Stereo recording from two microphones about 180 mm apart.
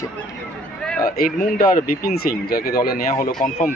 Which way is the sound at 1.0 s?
55° left (ahead or behind).